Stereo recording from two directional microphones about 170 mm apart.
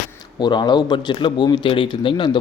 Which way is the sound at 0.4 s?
25° left (ahead or behind).